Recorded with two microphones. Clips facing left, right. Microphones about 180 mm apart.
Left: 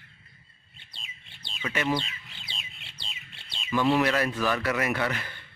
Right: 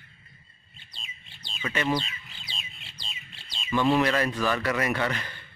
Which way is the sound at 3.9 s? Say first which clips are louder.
Right 1 dB; 10° left (ahead or behind).